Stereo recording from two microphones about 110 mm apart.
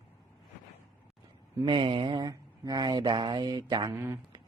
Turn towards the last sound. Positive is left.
turn(degrees=-25)  # may be behind; listen again after turning